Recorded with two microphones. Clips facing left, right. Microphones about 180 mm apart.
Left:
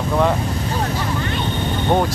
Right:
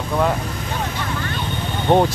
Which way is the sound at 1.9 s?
20° right (ahead or behind).